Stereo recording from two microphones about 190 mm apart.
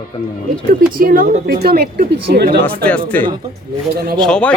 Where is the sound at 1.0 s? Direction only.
50° right (ahead or behind).